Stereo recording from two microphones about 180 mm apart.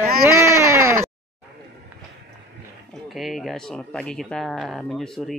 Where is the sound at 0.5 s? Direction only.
15° right (ahead or behind).